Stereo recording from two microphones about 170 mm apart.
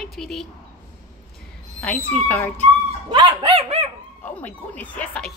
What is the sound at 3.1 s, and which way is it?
Dog, 30° right (ahead or behind).